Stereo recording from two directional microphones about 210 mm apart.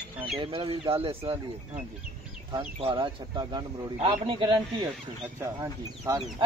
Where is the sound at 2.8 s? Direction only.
25° right (ahead or behind).